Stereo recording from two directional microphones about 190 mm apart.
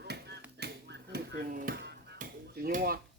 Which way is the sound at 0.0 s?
60° right (ahead or behind).